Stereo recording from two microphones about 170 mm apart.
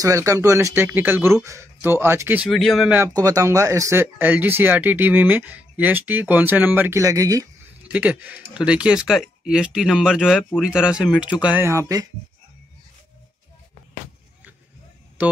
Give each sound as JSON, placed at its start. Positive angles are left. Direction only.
{"t": 0.0, "sound": "speech", "side_deg": -20}
{"t": 3.1, "sound": "speech", "side_deg": -20}
{"t": 7.9, "sound": "speech", "side_deg": -10}